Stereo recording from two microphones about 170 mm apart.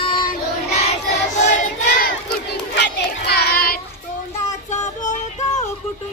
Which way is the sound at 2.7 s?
80° left.